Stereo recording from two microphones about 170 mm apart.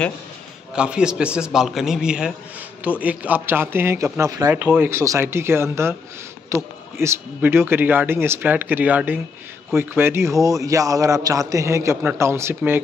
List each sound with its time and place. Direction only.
0.7 s a man's voice: 5° right (ahead or behind)